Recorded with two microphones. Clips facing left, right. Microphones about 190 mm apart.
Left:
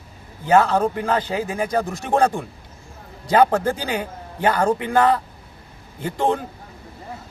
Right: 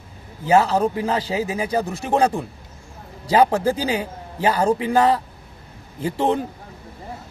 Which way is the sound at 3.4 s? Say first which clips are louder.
Even; 5° right (ahead or behind).